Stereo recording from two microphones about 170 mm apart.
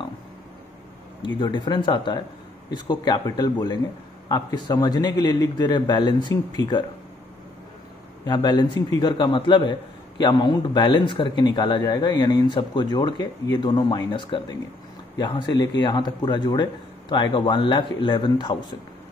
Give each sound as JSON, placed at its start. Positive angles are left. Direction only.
{"t": 1.2, "sound": "a man's voice", "side_deg": 30}
{"t": 8.3, "sound": "a man's voice", "side_deg": 25}